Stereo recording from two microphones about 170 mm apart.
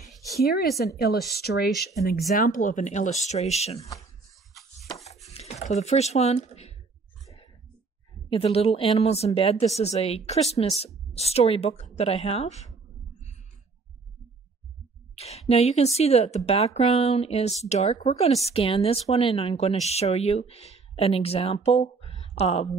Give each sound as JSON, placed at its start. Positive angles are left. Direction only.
{"t": 0.0, "sound": "a sound", "side_deg": 0}
{"t": 0.4, "sound": "speech", "side_deg": 65}
{"t": 2.0, "sound": "speech", "side_deg": 60}
{"t": 5.3, "sound": "speech", "side_deg": 40}
{"t": 8.3, "sound": "a woman's voice", "side_deg": 35}
{"t": 15.1, "sound": "a woman's voice", "side_deg": 40}